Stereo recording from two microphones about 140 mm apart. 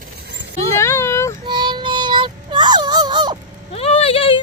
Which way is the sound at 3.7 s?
45° left (ahead or behind).